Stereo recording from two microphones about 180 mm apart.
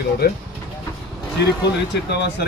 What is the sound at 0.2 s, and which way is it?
Speech, 65° left (ahead or behind).